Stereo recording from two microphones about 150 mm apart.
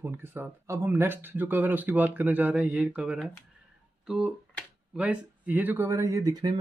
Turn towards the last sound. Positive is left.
turn(degrees=-25)  # may be behind; listen again after turning